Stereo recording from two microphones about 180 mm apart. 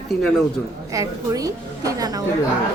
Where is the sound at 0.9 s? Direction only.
20° right (ahead or behind).